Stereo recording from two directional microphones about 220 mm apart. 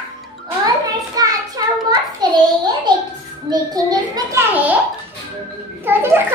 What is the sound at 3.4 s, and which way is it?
A child's voice, 15° right (ahead or behind).